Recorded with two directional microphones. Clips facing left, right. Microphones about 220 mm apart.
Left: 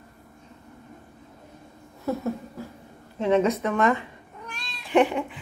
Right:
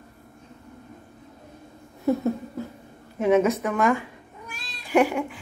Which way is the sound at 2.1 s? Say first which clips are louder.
Right 5 dB; 20° right (ahead or behind).